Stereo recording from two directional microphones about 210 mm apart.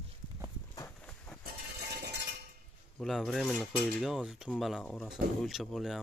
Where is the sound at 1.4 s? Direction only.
50° right (ahead or behind).